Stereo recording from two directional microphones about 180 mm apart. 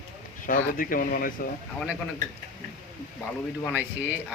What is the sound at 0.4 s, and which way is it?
Speech, 50° left (ahead or behind).